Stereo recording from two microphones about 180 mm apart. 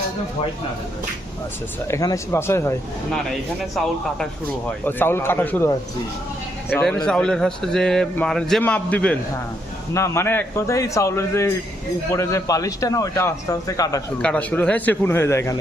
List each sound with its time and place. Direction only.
1.9 s a man's voice: 20° left (ahead or behind)
4.9 s a man's voice: 10° left (ahead or behind)
6.8 s a man's voice: 5° left (ahead or behind)
14.2 s a man's voice: 5° left (ahead or behind)